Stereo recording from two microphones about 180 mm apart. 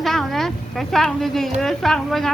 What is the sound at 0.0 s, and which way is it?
Speech, centre (ahead or behind).